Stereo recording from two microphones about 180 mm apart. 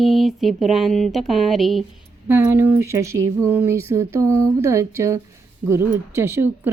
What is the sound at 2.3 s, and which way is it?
Speech, 10° right (ahead or behind).